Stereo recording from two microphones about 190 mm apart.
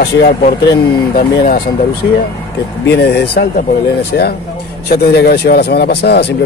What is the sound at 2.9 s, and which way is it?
Speech, 55° left (ahead or behind).